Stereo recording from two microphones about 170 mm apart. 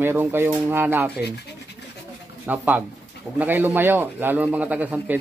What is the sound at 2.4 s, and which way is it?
A man's voice, 10° right (ahead or behind).